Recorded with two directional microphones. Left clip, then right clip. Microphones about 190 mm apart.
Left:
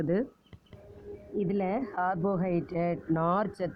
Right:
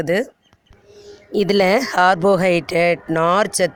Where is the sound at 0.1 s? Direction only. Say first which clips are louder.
Right 12 dB; 30° right (ahead or behind).